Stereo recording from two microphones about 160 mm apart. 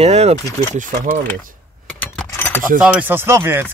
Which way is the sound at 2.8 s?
10° right (ahead or behind).